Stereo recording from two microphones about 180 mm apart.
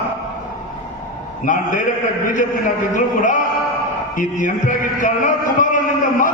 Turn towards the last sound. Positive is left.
turn(degrees=45)  # may be behind; listen again after turning